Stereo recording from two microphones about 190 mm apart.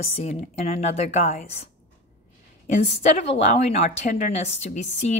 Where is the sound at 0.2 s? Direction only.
35° left (ahead or behind).